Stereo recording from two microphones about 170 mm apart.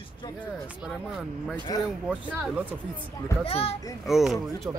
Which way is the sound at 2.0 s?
10° right (ahead or behind).